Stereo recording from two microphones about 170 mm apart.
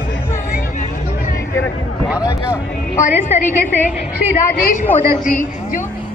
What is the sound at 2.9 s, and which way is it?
A woman's voice, 50° left (ahead or behind).